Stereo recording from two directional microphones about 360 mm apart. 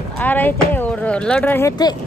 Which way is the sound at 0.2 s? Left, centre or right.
Centre.